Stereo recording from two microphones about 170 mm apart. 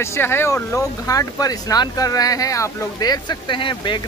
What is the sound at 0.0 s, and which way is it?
Speech, 15° left (ahead or behind).